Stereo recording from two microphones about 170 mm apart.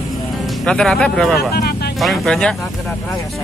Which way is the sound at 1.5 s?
65° left (ahead or behind).